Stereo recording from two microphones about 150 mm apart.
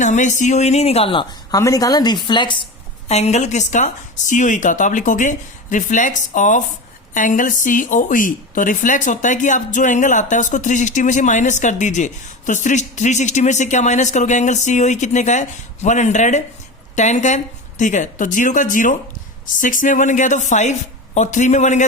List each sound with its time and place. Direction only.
0.0 s speech: 55° left (ahead or behind); by 1.5 s 35° left (ahead or behind)
1.5 s speech: 25° left (ahead or behind)
3.1 s speech: 45° left (ahead or behind)